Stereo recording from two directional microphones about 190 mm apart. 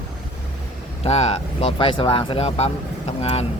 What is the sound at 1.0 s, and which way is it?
Speech, 35° left (ahead or behind).